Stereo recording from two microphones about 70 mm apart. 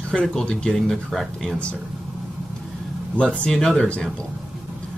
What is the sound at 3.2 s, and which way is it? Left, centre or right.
Speech, centre.